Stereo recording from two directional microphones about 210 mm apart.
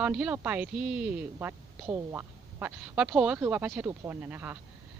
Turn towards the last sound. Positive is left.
turn(degrees=-10)  # may be behind; listen again after turning